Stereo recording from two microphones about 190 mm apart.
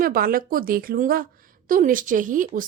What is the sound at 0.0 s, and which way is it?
A woman's voice, 50° right (ahead or behind).